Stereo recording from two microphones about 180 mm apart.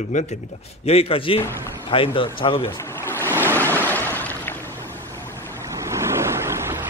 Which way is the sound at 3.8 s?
10° left (ahead or behind).